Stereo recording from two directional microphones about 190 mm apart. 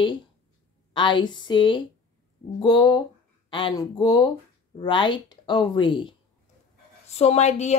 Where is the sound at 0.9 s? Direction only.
25° left (ahead or behind).